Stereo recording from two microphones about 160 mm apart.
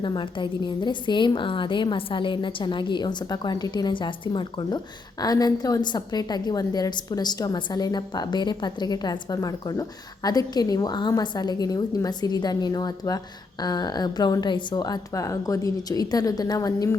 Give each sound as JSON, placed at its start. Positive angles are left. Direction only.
{"t": 0.0, "sound": "a woman's voice", "side_deg": 30}